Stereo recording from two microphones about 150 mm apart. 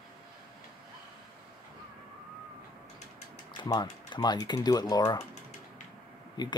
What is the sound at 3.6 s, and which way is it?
Speech, 25° left (ahead or behind).